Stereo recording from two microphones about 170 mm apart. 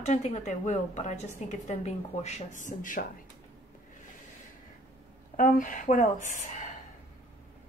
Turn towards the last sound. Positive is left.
turn(degrees=45)  # may be behind; listen again after turning